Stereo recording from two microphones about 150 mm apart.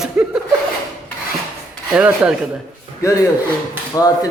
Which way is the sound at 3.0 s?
20° left (ahead or behind).